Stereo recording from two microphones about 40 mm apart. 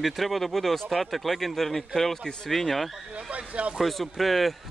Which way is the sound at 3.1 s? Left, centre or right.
Right.